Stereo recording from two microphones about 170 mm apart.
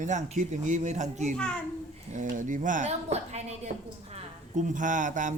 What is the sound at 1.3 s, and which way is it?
Speech, 5° left (ahead or behind).